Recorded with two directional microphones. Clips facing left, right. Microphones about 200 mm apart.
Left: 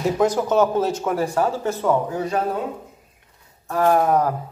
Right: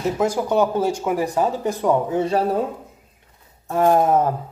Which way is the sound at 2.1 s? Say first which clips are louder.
Right 4 dB; 30° right (ahead or behind).